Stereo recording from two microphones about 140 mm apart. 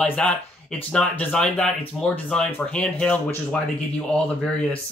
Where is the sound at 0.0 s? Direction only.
10° left (ahead or behind).